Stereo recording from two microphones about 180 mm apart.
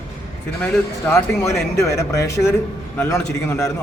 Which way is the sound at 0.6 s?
15° left (ahead or behind).